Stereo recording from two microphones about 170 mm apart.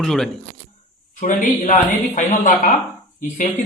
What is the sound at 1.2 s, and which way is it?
Speech, 45° left (ahead or behind).